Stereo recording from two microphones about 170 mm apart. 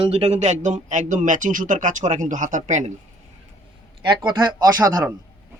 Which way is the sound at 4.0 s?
25° right (ahead or behind).